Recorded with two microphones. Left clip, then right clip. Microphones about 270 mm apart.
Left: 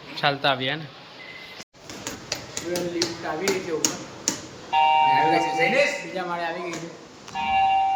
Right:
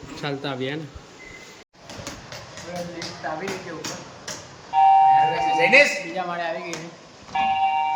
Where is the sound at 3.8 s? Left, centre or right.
Left.